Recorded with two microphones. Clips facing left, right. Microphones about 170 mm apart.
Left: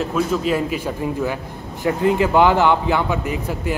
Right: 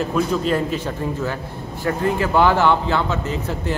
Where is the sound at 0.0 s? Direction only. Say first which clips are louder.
Even; 5° left (ahead or behind).